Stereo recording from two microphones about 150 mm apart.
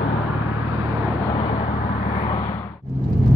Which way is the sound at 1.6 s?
65° left (ahead or behind).